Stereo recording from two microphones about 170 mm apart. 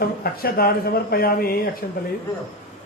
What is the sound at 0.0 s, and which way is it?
Speech, 60° left (ahead or behind).